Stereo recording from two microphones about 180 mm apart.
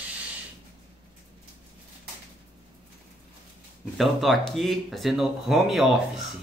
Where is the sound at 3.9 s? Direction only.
Centre (ahead or behind).